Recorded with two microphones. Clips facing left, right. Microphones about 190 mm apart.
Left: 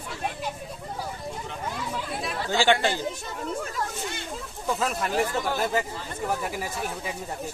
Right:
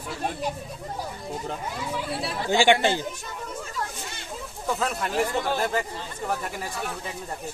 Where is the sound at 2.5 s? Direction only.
15° right (ahead or behind).